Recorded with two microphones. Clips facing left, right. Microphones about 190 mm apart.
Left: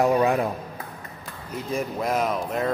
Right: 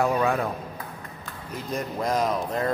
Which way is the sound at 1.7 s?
5° left (ahead or behind).